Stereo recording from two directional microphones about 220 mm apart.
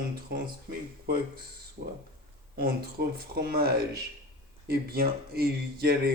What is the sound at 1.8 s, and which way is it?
Speech, 45° right (ahead or behind).